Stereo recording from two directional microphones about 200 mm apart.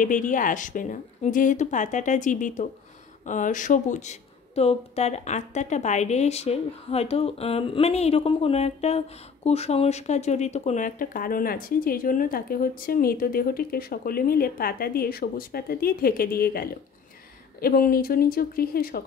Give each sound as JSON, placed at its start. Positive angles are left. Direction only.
{"t": 0.0, "sound": "a woman's voice", "side_deg": 40}